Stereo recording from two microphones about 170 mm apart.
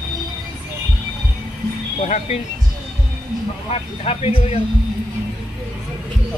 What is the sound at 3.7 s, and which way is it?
Speech, 35° left (ahead or behind).